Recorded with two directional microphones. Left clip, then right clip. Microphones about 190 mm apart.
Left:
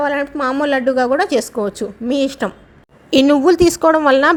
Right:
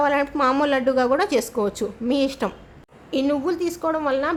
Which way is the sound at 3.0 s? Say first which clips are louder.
Left 11 dB; 40° left (ahead or behind).